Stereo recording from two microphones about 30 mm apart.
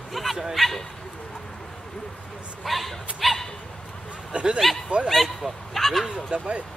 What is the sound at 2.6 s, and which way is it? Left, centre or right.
Speech, centre.